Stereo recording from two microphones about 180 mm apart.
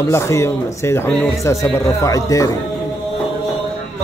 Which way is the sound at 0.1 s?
15° left (ahead or behind).